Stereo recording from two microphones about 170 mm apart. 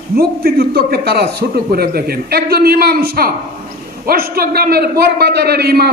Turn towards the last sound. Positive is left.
turn(degrees=-70)  # may be behind; listen again after turning